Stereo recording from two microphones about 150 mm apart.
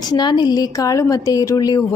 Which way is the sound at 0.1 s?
30° left (ahead or behind).